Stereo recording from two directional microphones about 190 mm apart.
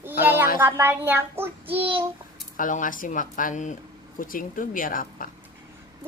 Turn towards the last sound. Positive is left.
turn(degrees=45)  # may be behind; listen again after turning